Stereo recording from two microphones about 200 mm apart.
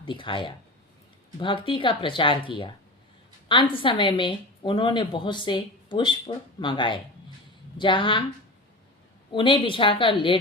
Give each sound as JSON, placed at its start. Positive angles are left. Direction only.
{"t": 0.0, "sound": "a woman's voice", "side_deg": 25}
{"t": 9.3, "sound": "a woman's voice", "side_deg": 25}